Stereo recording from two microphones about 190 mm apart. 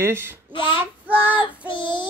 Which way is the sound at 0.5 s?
25° left (ahead or behind).